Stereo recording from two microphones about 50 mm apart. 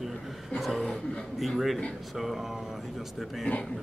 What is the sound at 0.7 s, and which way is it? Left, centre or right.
Speech, centre.